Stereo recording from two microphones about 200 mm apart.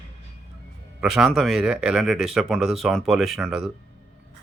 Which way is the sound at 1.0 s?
Centre (ahead or behind).